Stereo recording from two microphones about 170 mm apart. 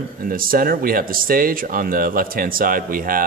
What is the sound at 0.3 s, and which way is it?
Speech, 55° right (ahead or behind).